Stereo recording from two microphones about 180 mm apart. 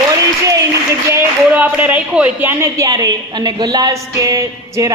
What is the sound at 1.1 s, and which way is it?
Speech, 10° right (ahead or behind).